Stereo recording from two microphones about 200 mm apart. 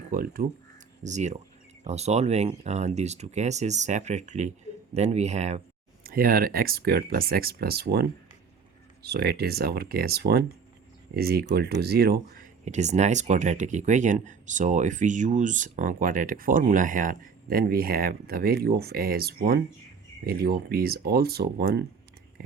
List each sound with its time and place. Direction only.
0.1 s speech: 45° right (ahead or behind)
9.0 s speech: 55° right (ahead or behind)